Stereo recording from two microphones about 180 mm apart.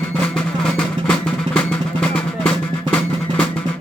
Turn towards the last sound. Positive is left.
turn(degrees=5)  # may be behind; listen again after turning